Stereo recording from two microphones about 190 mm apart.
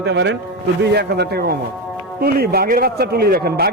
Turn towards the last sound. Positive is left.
turn(degrees=-55)  # may be behind; listen again after turning